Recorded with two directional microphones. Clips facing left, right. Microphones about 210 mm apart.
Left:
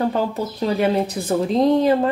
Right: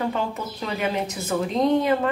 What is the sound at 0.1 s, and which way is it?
A woman's voice, 35° left (ahead or behind).